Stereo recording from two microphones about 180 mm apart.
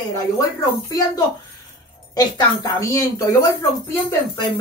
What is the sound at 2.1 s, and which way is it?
Speech, 20° left (ahead or behind).